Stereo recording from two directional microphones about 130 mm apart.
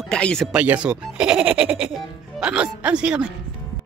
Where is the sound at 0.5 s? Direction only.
10° right (ahead or behind).